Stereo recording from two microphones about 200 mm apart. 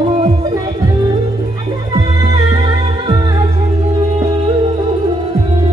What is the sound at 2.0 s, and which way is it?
Music, 20° right (ahead or behind).